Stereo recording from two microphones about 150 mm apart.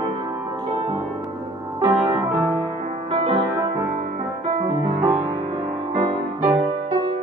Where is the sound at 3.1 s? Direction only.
40° right (ahead or behind).